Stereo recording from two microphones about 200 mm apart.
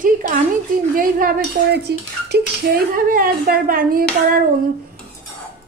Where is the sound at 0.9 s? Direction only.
50° right (ahead or behind).